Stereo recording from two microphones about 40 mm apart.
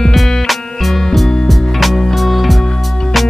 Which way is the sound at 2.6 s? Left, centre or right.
Centre.